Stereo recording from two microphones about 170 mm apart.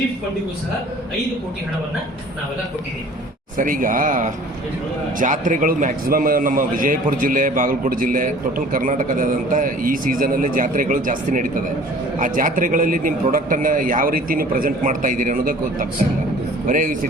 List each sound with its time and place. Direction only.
3.6 s a man's voice: 55° right (ahead or behind)